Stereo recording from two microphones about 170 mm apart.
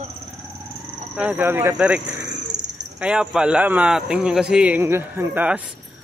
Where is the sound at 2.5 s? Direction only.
90° right.